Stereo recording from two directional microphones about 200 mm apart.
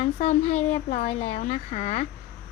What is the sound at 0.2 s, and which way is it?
Speech, 35° left (ahead or behind).